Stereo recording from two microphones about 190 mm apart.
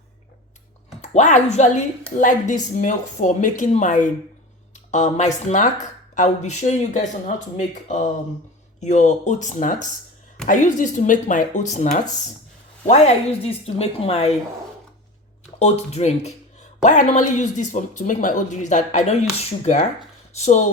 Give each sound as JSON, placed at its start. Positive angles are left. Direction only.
{"t": 1.0, "sound": "speech", "side_deg": 40}
{"t": 15.5, "sound": "speech", "side_deg": 35}